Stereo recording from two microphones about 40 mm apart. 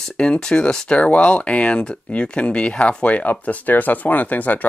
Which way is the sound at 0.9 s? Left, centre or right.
Left.